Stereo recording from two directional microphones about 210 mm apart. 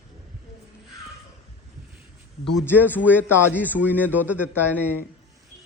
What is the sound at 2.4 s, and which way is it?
Speech, centre (ahead or behind).